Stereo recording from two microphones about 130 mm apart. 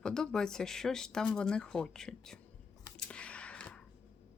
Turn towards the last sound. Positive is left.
turn(degrees=10)  # may be behind; listen again after turning